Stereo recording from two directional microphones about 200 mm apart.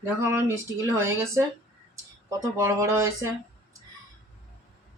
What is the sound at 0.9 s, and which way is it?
Speech, 10° right (ahead or behind).